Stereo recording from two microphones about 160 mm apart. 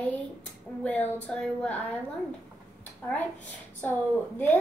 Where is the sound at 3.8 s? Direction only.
10° left (ahead or behind).